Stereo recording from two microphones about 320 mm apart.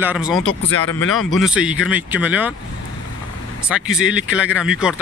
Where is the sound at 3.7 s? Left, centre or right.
Centre.